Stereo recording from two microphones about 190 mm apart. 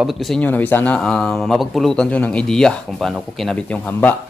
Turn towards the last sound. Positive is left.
turn(degrees=10)  # may be behind; listen again after turning